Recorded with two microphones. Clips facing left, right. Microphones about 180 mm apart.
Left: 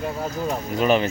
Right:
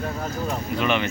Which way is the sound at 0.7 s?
40° left (ahead or behind).